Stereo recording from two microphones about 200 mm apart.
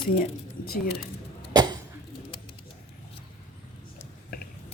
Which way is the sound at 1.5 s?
20° right (ahead or behind).